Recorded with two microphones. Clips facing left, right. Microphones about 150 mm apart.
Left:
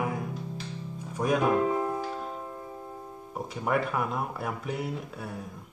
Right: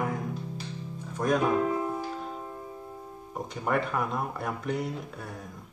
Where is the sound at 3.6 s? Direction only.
5° left (ahead or behind).